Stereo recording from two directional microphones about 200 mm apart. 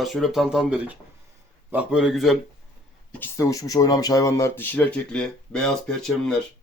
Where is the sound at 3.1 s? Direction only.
10° left (ahead or behind).